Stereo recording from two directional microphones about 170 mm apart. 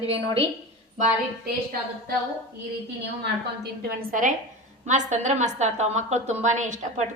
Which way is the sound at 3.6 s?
55° right (ahead or behind).